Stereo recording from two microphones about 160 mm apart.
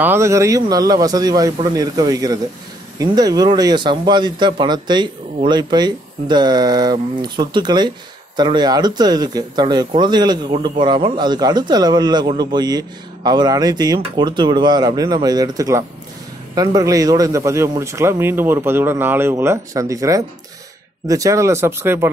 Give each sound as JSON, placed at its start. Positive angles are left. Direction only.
{"t": 0.0, "sound": "a man's voice", "side_deg": -15}